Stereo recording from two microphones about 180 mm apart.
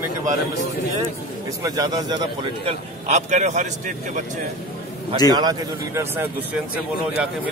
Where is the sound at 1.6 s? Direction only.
20° right (ahead or behind).